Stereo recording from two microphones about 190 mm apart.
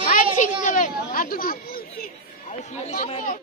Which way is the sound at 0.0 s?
45° left (ahead or behind).